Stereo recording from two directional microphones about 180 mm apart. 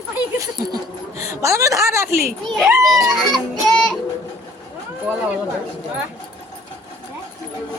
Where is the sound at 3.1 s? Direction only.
Centre (ahead or behind).